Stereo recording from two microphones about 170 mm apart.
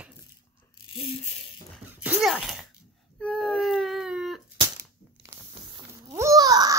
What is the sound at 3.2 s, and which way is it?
Baby cry, centre (ahead or behind).